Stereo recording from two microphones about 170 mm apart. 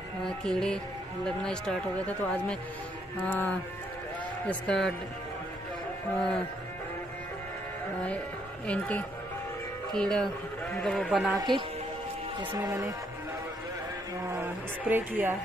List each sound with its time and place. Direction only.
0.4 s speech: 5° left (ahead or behind)
8.6 s speech: 10° left (ahead or behind)
11.3 s speech: 25° right (ahead or behind)
14.3 s speech: 10° right (ahead or behind)